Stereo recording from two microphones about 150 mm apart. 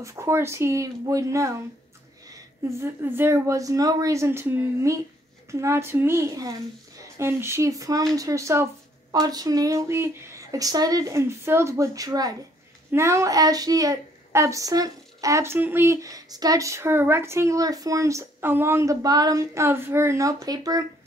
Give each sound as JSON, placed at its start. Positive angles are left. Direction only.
{"t": 0.0, "sound": "a woman's voice", "side_deg": -20}